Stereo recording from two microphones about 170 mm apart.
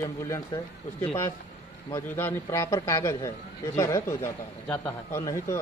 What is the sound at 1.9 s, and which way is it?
Speech, 15° left (ahead or behind).